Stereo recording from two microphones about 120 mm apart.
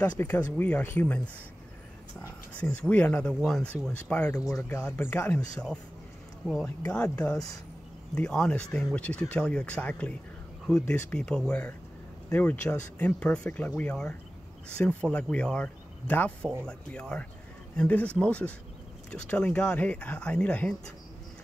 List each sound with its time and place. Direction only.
0.2 s speech: 15° left (ahead or behind)
6.4 s speech: centre (ahead or behind)